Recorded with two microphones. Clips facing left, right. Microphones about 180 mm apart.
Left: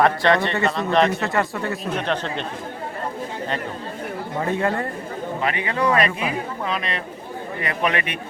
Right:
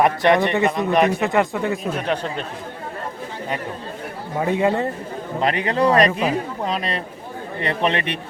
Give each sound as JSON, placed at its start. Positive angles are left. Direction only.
{"t": 0.0, "sound": "speech", "side_deg": -20}
{"t": 4.4, "sound": "speech", "side_deg": -15}
{"t": 5.4, "sound": "a man's voice", "side_deg": -35}